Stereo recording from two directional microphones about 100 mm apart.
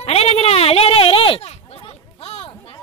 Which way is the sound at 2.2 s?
90° left.